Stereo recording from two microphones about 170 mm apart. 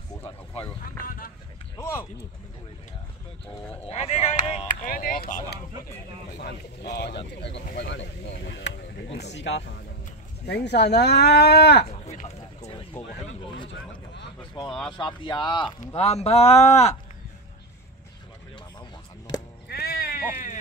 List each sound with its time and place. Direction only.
1.8 s speech: 15° left (ahead or behind)
3.8 s a man's voice: 40° left (ahead or behind)
4.6 s speech: 55° left (ahead or behind)
6.3 s speech: 80° left
7.8 s speech: 90° left; by 11.9 s 75° left (ahead or behind)
11.9 s a sound: 40° left (ahead or behind)
14.5 s a man's voice: 25° left (ahead or behind)
18.8 s a sound: 25° left (ahead or behind)
19.7 s sheep: 60° left (ahead or behind)